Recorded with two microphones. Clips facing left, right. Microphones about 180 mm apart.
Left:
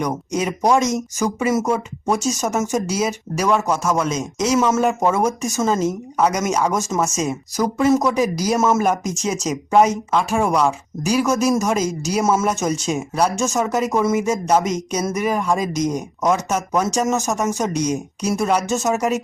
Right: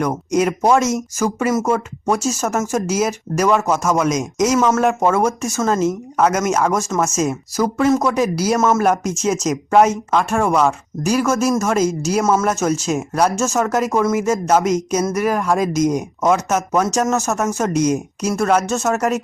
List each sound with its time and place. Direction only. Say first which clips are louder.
0.0 s speech: right 4 dB; centre (ahead or behind)
7.5 s speech: right 1 dB; 20° left (ahead or behind)
7.9 s speech: left 1 dB; centre (ahead or behind)